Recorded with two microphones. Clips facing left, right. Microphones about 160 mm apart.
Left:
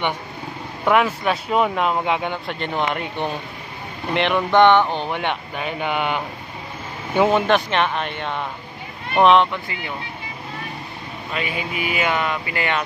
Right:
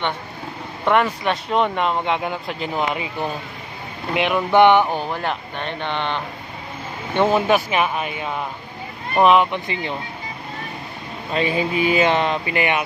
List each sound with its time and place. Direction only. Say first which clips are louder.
0.8 s speech: even; 5° left (ahead or behind)
5.1 s speech: left 1 dB; centre (ahead or behind)
9.5 s speech: right 4 dB; 20° right (ahead or behind)
11.3 s speech: right 7 dB; 30° right (ahead or behind)